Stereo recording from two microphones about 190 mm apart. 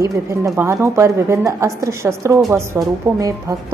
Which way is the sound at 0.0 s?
15° right (ahead or behind).